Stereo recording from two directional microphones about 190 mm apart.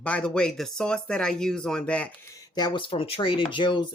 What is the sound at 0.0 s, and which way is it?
Speech, 5° left (ahead or behind).